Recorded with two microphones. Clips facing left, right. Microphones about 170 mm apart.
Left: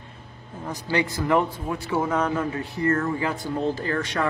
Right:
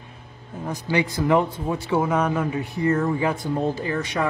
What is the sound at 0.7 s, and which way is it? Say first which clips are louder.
Speech: right 2 dB; 15° right (ahead or behind).